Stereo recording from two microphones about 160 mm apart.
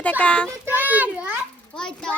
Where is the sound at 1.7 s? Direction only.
5° left (ahead or behind).